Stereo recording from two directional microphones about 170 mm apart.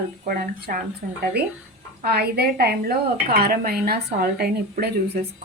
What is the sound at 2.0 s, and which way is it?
A woman's voice, 65° right (ahead or behind).